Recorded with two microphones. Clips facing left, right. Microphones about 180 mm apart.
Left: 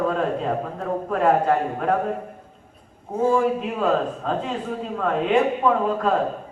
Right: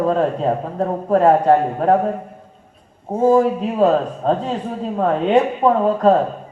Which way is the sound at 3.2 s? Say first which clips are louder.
Right 6 dB; 40° right (ahead or behind).